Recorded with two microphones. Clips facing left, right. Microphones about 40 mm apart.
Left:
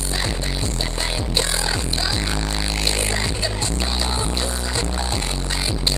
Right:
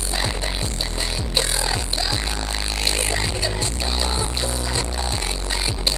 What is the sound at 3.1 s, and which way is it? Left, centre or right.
Music, centre.